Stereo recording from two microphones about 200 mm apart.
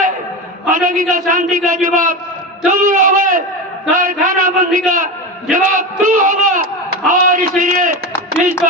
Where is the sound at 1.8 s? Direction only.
40° right (ahead or behind).